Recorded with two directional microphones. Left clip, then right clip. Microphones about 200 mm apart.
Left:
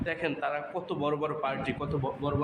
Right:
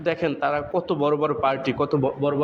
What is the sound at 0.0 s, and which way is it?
A man's voice, 30° right (ahead or behind).